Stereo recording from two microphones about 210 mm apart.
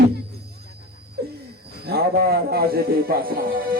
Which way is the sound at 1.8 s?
50° right (ahead or behind).